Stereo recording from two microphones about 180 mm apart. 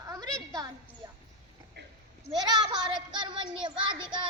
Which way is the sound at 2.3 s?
20° right (ahead or behind).